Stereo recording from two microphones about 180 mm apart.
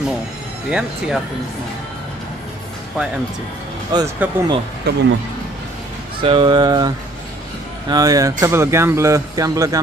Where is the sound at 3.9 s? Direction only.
15° right (ahead or behind).